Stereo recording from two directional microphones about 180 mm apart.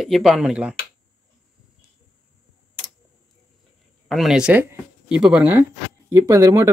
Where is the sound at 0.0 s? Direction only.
Centre (ahead or behind).